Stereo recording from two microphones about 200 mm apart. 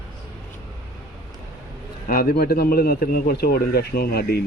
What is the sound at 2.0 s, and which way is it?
A man's voice, 50° left (ahead or behind).